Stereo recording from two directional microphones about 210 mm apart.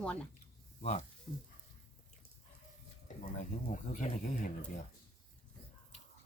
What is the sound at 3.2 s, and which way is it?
Speech, 35° left (ahead or behind).